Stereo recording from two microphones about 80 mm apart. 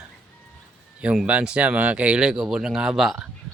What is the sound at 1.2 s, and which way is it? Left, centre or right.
Speech, centre.